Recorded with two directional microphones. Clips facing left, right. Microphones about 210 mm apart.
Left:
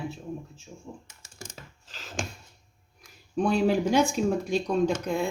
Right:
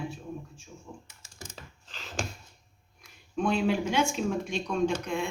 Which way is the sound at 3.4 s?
40° left (ahead or behind).